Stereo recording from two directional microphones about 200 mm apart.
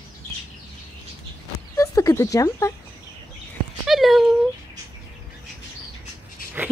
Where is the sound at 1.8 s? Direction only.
15° left (ahead or behind).